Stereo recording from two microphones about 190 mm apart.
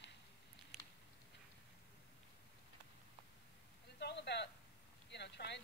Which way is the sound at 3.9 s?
60° left (ahead or behind).